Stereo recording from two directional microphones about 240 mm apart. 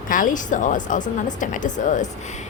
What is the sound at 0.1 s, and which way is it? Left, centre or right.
Speech, left.